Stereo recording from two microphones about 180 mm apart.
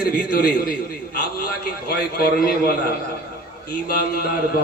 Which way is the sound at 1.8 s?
60° left (ahead or behind).